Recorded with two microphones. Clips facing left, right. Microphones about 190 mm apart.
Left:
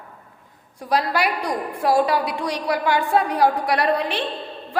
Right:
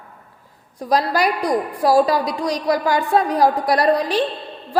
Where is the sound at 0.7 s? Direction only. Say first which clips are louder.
Right 3 dB; 40° right (ahead or behind).